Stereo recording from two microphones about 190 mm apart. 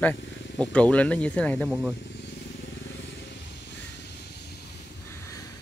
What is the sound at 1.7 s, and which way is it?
Speech, 10° right (ahead or behind).